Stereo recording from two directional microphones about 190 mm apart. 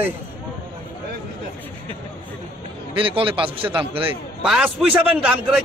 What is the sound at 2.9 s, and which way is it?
Speech, 30° right (ahead or behind).